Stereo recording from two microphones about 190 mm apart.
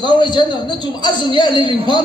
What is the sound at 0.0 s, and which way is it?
A man's voice, 25° left (ahead or behind).